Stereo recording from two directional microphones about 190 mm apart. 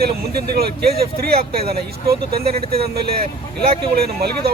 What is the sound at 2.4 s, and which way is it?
Speech, 30° right (ahead or behind).